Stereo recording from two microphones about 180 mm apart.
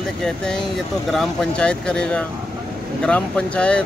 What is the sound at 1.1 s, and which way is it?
Speech, 5° left (ahead or behind).